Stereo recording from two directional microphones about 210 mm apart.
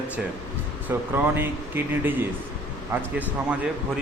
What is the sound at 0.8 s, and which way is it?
Speech, 10° right (ahead or behind).